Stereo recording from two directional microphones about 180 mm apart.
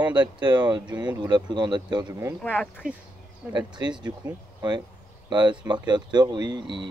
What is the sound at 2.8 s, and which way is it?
Speech, 50° right (ahead or behind).